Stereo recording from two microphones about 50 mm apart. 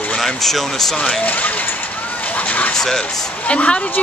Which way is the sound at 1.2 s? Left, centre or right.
Left.